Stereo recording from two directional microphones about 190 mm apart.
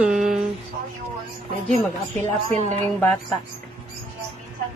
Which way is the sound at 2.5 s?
35° right (ahead or behind).